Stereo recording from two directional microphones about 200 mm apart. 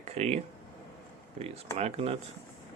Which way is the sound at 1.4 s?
30° right (ahead or behind).